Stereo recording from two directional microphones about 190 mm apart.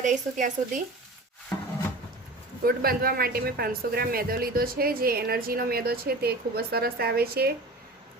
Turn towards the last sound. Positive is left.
turn(degrees=-55)  # may be behind; listen again after turning